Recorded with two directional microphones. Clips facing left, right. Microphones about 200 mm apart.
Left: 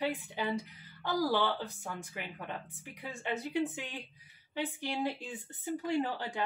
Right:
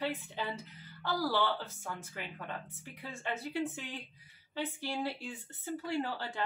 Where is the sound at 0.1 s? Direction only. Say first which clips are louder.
Left 4 dB; 15° left (ahead or behind).